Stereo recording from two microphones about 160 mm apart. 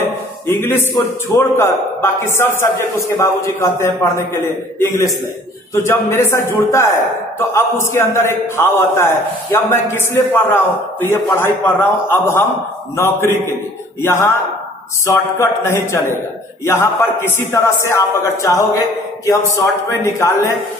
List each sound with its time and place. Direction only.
0.5 s a man's voice: 15° left (ahead or behind)